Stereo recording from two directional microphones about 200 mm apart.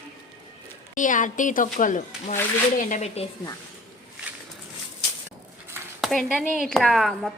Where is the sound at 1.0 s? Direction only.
40° left (ahead or behind).